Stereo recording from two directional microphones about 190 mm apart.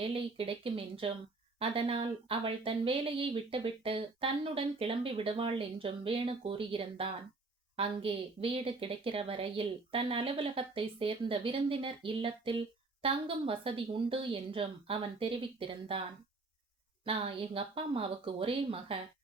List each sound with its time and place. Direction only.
0.0 s a woman's voice: 30° right (ahead or behind)
17.1 s a woman's voice: 30° right (ahead or behind)